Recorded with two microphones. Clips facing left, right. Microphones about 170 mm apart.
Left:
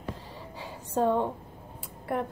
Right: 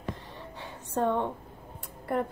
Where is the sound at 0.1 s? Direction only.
10° left (ahead or behind).